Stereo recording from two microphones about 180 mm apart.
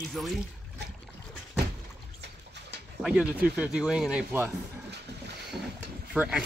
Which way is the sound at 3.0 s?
5° right (ahead or behind).